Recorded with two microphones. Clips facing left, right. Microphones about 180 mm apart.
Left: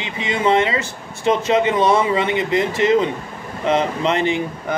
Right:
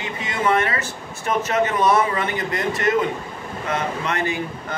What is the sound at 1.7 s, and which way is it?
Speech, 20° left (ahead or behind).